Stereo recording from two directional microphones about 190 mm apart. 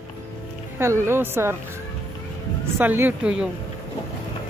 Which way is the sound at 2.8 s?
10° right (ahead or behind).